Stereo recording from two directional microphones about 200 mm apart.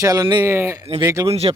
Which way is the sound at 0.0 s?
15° right (ahead or behind).